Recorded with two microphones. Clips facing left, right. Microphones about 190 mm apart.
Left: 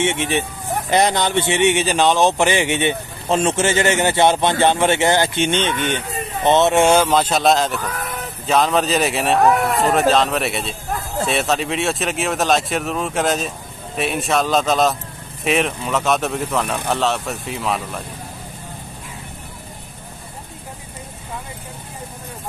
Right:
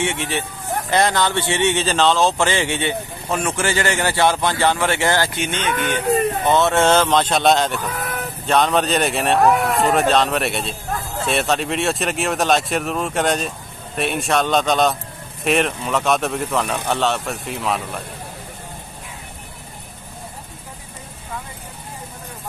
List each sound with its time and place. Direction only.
0.0 s speech: 20° left (ahead or behind); by 17.8 s centre (ahead or behind)